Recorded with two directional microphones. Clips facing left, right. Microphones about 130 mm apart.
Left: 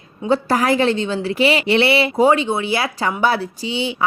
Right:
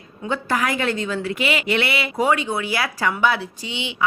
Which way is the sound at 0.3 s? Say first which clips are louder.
Left 6 dB; 35° left (ahead or behind).